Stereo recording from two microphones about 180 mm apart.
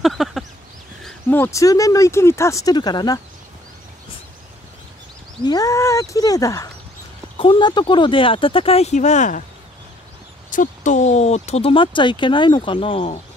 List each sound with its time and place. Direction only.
0.0 s a sound: centre (ahead or behind)
1.0 s speech: 10° left (ahead or behind)
5.4 s speech: 20° left (ahead or behind); by 9.4 s 40° left (ahead or behind)
10.5 s speech: 45° left (ahead or behind)